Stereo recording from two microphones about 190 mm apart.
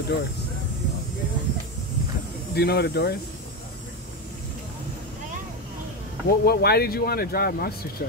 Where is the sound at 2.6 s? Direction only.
60° left (ahead or behind).